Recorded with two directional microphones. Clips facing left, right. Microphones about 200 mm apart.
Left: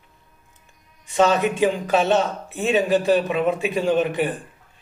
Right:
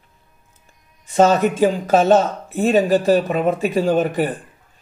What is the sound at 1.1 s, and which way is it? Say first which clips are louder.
Speech: right 4 dB; 40° right (ahead or behind).